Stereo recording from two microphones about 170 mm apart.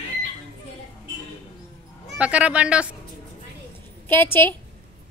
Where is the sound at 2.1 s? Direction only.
5° right (ahead or behind).